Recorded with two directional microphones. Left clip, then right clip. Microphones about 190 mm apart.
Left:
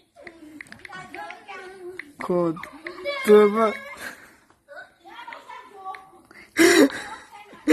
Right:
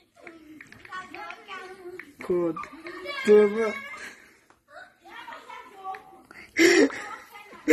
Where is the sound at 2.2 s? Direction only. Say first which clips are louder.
Left 3 dB; 40° left (ahead or behind).